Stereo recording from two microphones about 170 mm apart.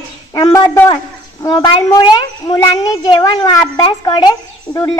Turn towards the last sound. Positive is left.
turn(degrees=25)  # may be behind; listen again after turning